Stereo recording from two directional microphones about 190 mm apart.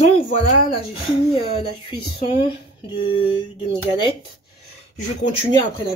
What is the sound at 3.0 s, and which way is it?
Mantra, 25° left (ahead or behind).